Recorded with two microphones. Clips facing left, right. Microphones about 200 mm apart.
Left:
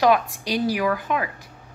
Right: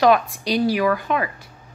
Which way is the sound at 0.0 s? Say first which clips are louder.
Right 2 dB; 15° left (ahead or behind).